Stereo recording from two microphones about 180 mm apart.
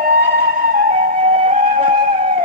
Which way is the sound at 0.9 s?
40° right (ahead or behind).